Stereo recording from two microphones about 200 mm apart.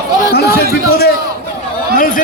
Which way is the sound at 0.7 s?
50° left (ahead or behind).